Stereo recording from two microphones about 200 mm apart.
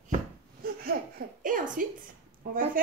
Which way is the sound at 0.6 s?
45° right (ahead or behind).